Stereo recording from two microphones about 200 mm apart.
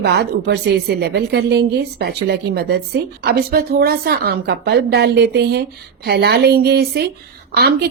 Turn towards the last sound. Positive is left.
turn(degrees=-55)  # may be behind; listen again after turning